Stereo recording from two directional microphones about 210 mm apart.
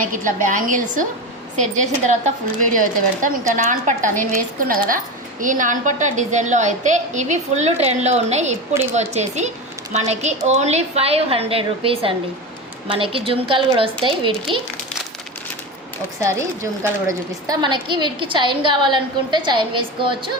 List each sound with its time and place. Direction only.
0.0 s speech: 40° right (ahead or behind)
8.7 s speech: 10° right (ahead or behind)
9.0 s a woman's voice: 35° right (ahead or behind)
16.8 s a woman's voice: 15° right (ahead or behind)